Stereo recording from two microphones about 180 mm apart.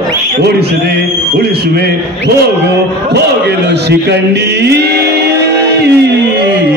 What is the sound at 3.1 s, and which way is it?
Speech, 65° right (ahead or behind).